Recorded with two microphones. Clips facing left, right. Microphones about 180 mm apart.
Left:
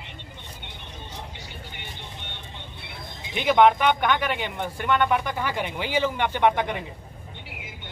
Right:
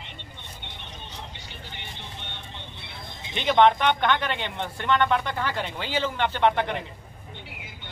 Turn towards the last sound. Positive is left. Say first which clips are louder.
# left 1 dB
turn(degrees=15)  # may be behind; listen again after turning